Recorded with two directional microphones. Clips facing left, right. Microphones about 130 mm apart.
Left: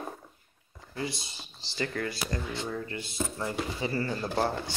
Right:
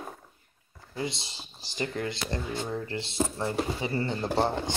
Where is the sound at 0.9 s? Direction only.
20° right (ahead or behind).